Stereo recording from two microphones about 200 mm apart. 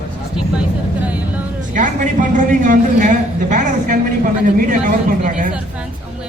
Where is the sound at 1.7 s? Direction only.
40° right (ahead or behind).